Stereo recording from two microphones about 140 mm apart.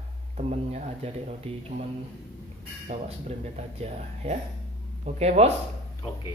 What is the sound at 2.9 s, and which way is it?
Speech, 45° right (ahead or behind).